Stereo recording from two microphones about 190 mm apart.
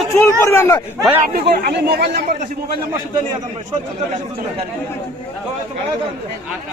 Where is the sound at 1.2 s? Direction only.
55° right (ahead or behind).